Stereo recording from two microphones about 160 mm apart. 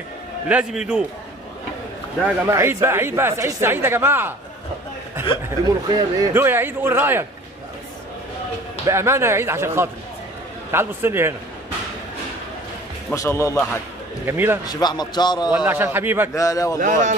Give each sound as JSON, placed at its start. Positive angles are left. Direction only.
{"t": 0.5, "sound": "a man's voice", "side_deg": -5}
{"t": 2.2, "sound": "speech", "side_deg": -15}
{"t": 5.9, "sound": "speech", "side_deg": -20}
{"t": 8.8, "sound": "speech", "side_deg": -15}
{"t": 13.1, "sound": "a man's voice", "side_deg": 20}
{"t": 14.2, "sound": "speech", "side_deg": -15}
{"t": 14.7, "sound": "a man's voice", "side_deg": 25}
{"t": 15.6, "sound": "speech", "side_deg": -15}
{"t": 16.3, "sound": "a man's voice", "side_deg": 20}
{"t": 16.8, "sound": "speech", "side_deg": -50}